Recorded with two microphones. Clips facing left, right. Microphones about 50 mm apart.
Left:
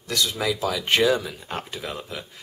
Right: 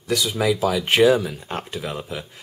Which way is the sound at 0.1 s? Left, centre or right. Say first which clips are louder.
Right 4 dB; centre.